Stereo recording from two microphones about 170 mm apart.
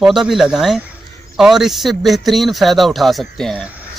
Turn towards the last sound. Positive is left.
turn(degrees=5)  # may be behind; listen again after turning